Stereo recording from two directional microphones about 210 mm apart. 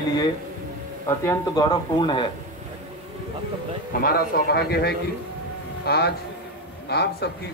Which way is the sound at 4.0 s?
45° left (ahead or behind).